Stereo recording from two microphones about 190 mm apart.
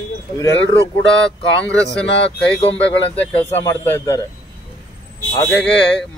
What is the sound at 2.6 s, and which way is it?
Speech, 30° left (ahead or behind).